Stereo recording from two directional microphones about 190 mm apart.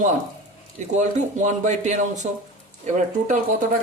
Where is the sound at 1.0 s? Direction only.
40° right (ahead or behind).